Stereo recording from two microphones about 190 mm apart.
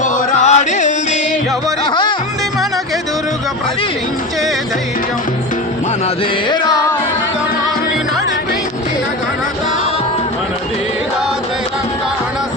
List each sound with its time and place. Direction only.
0.0 s music: 45° left (ahead or behind)
1.8 s music: 25° left (ahead or behind)